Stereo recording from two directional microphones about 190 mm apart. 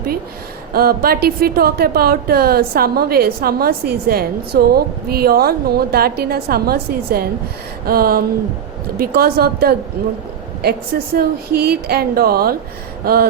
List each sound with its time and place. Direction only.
0.7 s speech: 50° right (ahead or behind)